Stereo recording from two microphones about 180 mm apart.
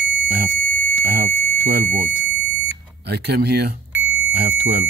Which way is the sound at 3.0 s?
65° right (ahead or behind).